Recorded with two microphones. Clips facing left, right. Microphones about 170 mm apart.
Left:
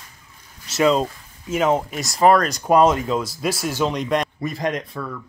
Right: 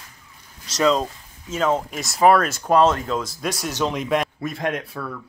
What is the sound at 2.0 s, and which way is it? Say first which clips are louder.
Speech: even; centre (ahead or behind).